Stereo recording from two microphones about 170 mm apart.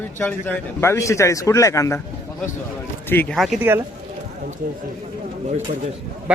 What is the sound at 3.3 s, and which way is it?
Speech, centre (ahead or behind).